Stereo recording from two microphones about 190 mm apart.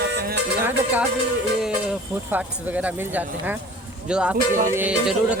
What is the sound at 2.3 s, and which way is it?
A woman's voice, 10° right (ahead or behind).